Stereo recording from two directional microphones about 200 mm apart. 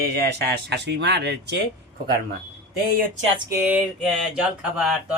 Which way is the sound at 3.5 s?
10° right (ahead or behind).